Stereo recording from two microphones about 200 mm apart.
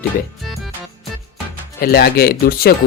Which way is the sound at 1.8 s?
50° left (ahead or behind).